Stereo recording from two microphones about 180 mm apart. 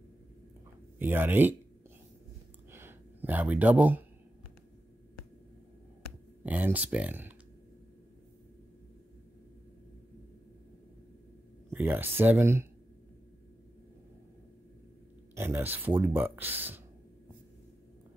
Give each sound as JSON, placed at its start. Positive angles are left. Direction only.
{"t": 0.9, "sound": "speech", "side_deg": -10}
{"t": 2.7, "sound": "a sound", "side_deg": -10}
{"t": 6.4, "sound": "speech", "side_deg": -10}
{"t": 11.7, "sound": "speech", "side_deg": -10}
{"t": 15.3, "sound": "speech", "side_deg": -15}